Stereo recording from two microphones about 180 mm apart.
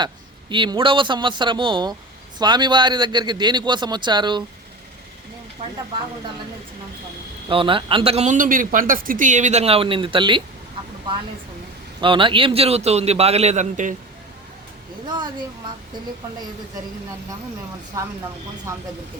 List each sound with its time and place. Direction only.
0.5 s speech: 25° right (ahead or behind)
7.4 s speech: 30° right (ahead or behind)
11.9 s speech: 25° right (ahead or behind); by 13.9 s 45° right (ahead or behind)
18.0 s speech: 15° right (ahead or behind)